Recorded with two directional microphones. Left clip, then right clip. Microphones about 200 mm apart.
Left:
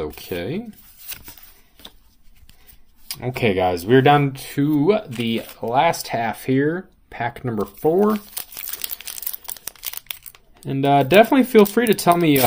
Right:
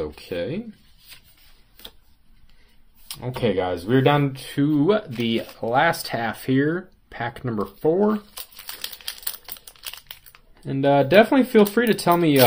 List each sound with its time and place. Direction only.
0.0 s speech: 35° left (ahead or behind)
3.1 s speech: 35° left (ahead or behind); by 5.3 s 15° left (ahead or behind)
5.3 s speech: 5° left (ahead or behind); by 8.1 s 25° left (ahead or behind)
10.6 s speech: 25° left (ahead or behind)